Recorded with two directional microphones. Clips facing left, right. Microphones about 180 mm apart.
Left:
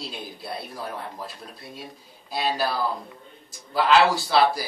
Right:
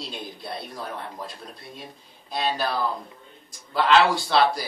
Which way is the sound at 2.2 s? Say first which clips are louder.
Left 1 dB; 5° left (ahead or behind).